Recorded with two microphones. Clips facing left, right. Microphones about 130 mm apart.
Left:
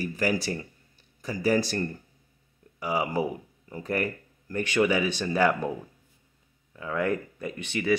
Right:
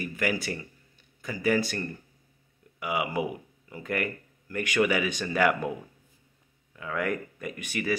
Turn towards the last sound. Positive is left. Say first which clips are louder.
# left 2 dB
turn(degrees=25)  # may be behind; listen again after turning